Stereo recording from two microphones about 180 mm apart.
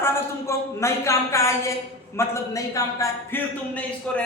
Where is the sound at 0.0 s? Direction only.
15° left (ahead or behind).